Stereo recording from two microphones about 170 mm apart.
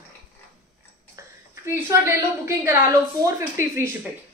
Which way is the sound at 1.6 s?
15° right (ahead or behind).